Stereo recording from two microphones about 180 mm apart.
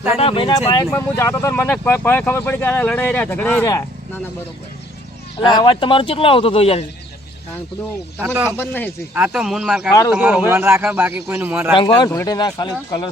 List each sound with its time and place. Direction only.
0.1 s speech: 30° left (ahead or behind)
0.5 s speech: 20° left (ahead or behind)
5.4 s speech: 25° left (ahead or behind)
8.2 s a man's voice: 10° right (ahead or behind)
8.5 s speech: 10° left (ahead or behind)
9.1 s a man's voice: 5° right (ahead or behind)
11.7 s speech: 25° left (ahead or behind)